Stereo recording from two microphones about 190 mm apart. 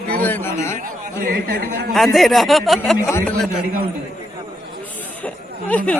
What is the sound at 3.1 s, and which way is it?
Speech, 15° left (ahead or behind).